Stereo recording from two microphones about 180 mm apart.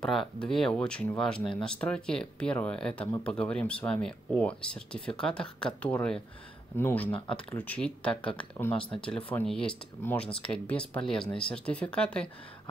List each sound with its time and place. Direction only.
0.0 s speech: centre (ahead or behind)
8.7 s speech: 30° left (ahead or behind)
9.5 s speech: 5° left (ahead or behind)